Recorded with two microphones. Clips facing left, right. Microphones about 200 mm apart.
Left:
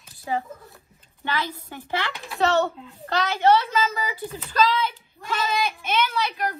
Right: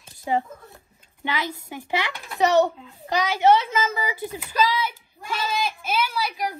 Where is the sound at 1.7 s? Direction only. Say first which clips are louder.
Right 3 dB; 15° right (ahead or behind).